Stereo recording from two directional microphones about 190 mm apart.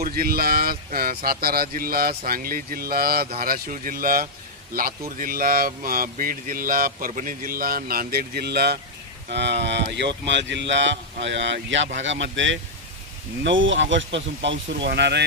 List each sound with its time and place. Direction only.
0.0 s speech: 50° right (ahead or behind)